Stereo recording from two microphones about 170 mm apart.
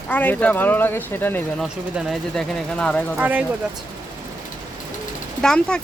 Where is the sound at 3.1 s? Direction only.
10° right (ahead or behind).